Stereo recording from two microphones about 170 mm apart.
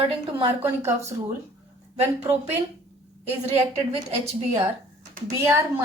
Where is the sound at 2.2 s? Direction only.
10° right (ahead or behind).